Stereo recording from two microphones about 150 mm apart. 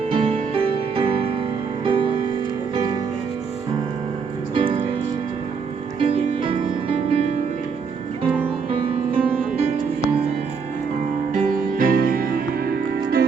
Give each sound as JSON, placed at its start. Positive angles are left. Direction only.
{"t": 0.1, "sound": "music", "side_deg": -35}
{"t": 4.5, "sound": "music", "side_deg": -35}
{"t": 6.0, "sound": "music", "side_deg": -35}
{"t": 8.7, "sound": "music", "side_deg": -40}
{"t": 11.3, "sound": "music", "side_deg": -70}